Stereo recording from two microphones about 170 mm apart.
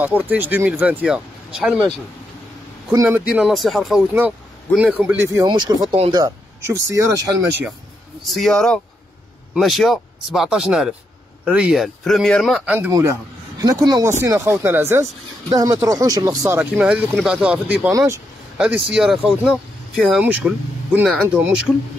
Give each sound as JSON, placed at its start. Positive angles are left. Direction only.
{"t": 0.0, "sound": "speech", "side_deg": -10}
{"t": 2.9, "sound": "speech", "side_deg": -20}
{"t": 3.3, "sound": "speech", "side_deg": -5}
{"t": 5.9, "sound": "speech", "side_deg": -35}
{"t": 6.2, "sound": "speech", "side_deg": -20}
{"t": 8.2, "sound": "speech", "side_deg": 0}
{"t": 12.9, "sound": "speech", "side_deg": -20}
{"t": 17.9, "sound": "speech", "side_deg": -15}
{"t": 18.9, "sound": "speech", "side_deg": -5}